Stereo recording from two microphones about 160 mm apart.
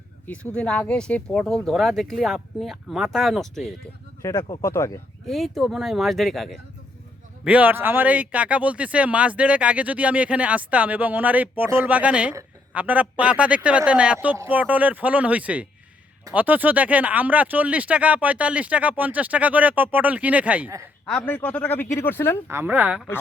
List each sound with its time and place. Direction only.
0.3 s speech: 10° left (ahead or behind)
4.2 s speech: 20° left (ahead or behind)
5.2 s speech: centre (ahead or behind)
21.1 s speech: 10° left (ahead or behind)
22.4 s speech: 10° right (ahead or behind)